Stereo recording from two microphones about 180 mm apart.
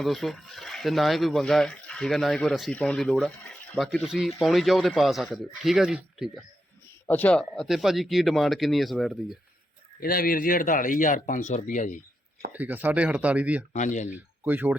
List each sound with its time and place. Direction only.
0.0 s speech: centre (ahead or behind)
7.1 s speech: 10° left (ahead or behind)
10.0 s speech: 55° left (ahead or behind)
12.5 s speech: 10° right (ahead or behind)
13.7 s speech: 45° left (ahead or behind)
14.1 s speech: 10° right (ahead or behind)